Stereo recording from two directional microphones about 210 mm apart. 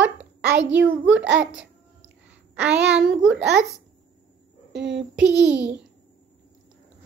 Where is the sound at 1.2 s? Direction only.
60° right (ahead or behind).